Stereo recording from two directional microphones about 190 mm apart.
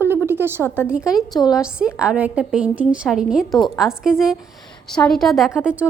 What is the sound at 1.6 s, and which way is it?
A woman's voice, 5° right (ahead or behind).